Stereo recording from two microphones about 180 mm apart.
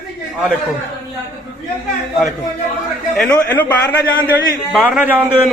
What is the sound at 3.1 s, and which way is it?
Speech, 5° left (ahead or behind).